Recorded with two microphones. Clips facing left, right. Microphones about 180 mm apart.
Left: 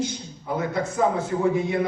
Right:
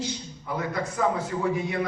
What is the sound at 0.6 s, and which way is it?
A man's voice, 25° left (ahead or behind).